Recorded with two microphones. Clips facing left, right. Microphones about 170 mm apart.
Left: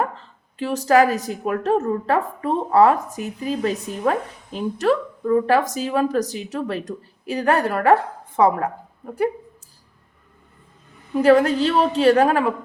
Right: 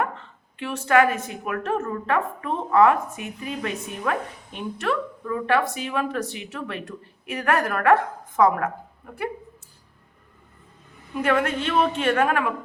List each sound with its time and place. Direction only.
0.0 s a woman's voice: 35° left (ahead or behind)
11.1 s a woman's voice: 35° left (ahead or behind)